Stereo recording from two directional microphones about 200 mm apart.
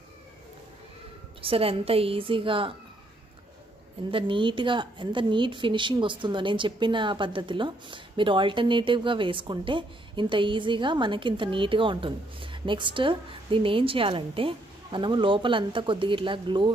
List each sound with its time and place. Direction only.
1.4 s a woman's voice: 30° right (ahead or behind)
4.1 s a woman's voice: 25° right (ahead or behind)